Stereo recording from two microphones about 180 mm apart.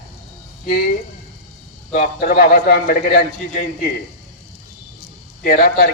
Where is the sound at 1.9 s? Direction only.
55° left (ahead or behind).